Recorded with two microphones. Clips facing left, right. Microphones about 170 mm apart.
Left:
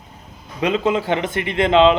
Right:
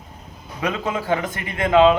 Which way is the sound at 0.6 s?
25° left (ahead or behind).